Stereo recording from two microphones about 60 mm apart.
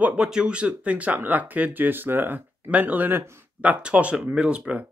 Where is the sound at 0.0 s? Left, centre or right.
Centre.